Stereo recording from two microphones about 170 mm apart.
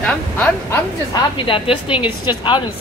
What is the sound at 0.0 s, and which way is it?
Speech, 5° left (ahead or behind).